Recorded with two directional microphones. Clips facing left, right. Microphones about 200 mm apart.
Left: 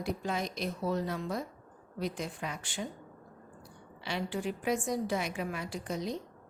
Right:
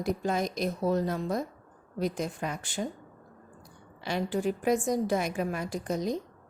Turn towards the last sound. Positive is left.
turn(degrees=-45)  # may be behind; listen again after turning